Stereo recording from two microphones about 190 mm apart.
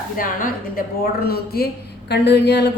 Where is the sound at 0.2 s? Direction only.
45° left (ahead or behind).